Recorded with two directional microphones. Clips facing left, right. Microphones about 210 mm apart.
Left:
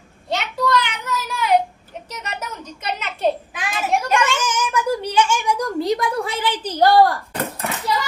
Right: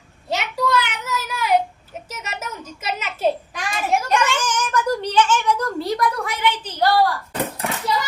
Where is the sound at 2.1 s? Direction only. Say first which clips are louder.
Left 1 dB; 5° right (ahead or behind); by 6.7 s 30° left (ahead or behind).